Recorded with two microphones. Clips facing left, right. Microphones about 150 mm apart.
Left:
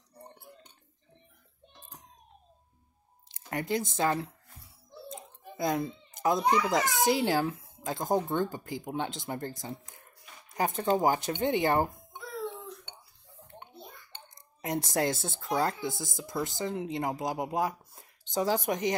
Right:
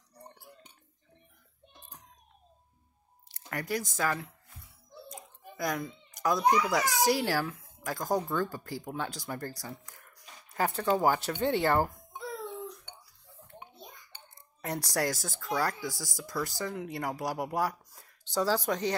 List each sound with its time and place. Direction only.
3.3 s music: 20° left (ahead or behind)
6.7 s speech: 20° left (ahead or behind)
14.3 s speech: 20° left (ahead or behind)